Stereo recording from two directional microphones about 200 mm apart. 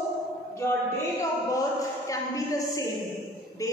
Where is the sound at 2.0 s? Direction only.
15° left (ahead or behind).